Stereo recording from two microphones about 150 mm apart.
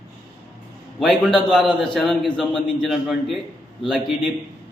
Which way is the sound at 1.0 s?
5° left (ahead or behind).